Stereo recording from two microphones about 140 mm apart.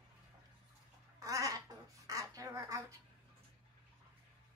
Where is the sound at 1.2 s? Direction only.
25° right (ahead or behind).